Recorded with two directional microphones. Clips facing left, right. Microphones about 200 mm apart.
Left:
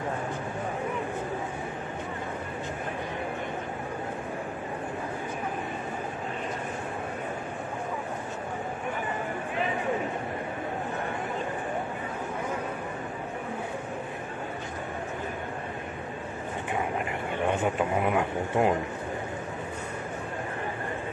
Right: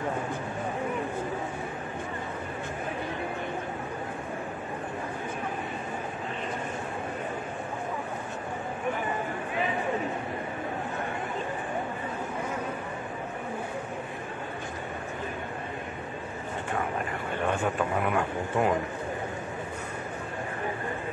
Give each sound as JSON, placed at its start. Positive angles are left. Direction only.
{"t": 17.4, "sound": "a man's voice", "side_deg": 20}